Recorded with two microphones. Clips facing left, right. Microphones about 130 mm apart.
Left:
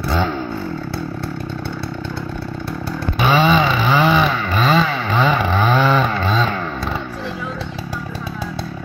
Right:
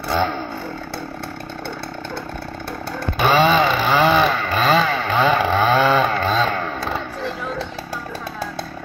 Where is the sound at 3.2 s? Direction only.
40° right (ahead or behind).